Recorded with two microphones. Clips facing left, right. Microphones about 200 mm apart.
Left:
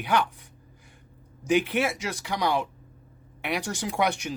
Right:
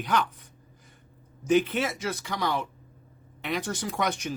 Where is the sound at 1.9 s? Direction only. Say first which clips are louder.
Even; 15° left (ahead or behind).